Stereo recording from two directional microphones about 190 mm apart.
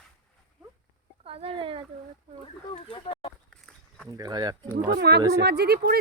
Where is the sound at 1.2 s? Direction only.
30° right (ahead or behind).